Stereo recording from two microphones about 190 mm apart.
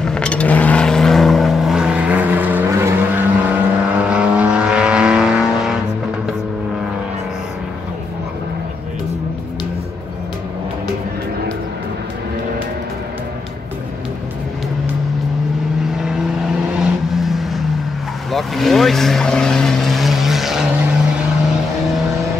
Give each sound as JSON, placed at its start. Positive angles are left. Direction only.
{"t": 0.0, "sound": "vehicle", "side_deg": 5}
{"t": 17.1, "sound": "vehicle", "side_deg": 0}